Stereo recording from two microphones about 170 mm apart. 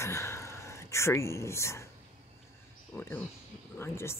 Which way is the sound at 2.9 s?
10° left (ahead or behind).